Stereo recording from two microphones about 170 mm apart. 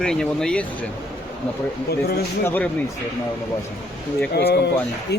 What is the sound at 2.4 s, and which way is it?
Speech, 10° left (ahead or behind).